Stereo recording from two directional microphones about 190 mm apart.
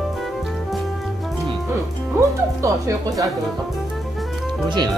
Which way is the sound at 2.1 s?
15° right (ahead or behind).